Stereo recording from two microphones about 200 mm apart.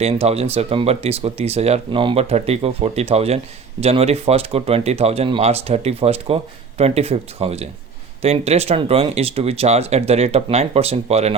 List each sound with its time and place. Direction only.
0.0 s speech: 30° right (ahead or behind)